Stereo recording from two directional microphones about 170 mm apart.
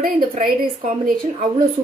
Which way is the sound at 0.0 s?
50° right (ahead or behind).